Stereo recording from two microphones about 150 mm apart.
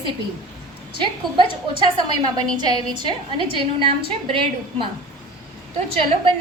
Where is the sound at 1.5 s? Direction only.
30° right (ahead or behind).